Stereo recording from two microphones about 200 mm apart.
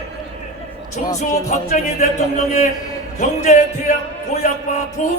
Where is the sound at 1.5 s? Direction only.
40° left (ahead or behind).